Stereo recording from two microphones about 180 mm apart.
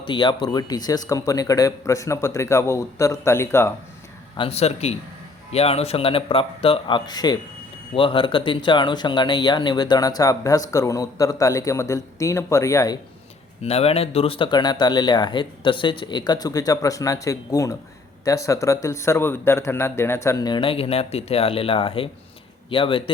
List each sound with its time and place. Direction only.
0.0 s speech: 25° left (ahead or behind)
4.4 s speech: 35° left (ahead or behind); by 13.0 s 20° left (ahead or behind)
13.6 s speech: 35° left (ahead or behind)